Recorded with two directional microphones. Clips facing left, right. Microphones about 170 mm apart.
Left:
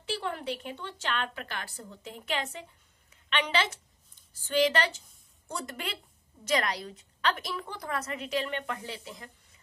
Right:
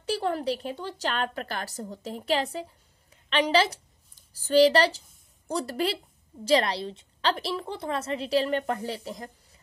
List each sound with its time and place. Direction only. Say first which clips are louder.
0.0 s a woman's voice: right 6 dB; 40° right (ahead or behind)